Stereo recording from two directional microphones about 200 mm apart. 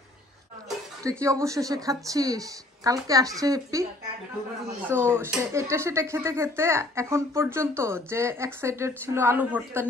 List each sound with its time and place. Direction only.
1.0 s speech: 15° right (ahead or behind)
4.8 s speech: 10° right (ahead or behind)